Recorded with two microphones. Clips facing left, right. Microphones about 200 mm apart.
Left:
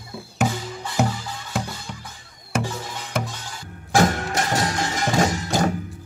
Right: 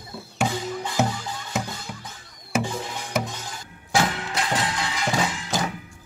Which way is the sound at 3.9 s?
45° left (ahead or behind).